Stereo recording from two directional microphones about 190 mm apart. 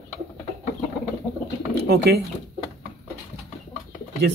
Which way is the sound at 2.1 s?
60° right (ahead or behind).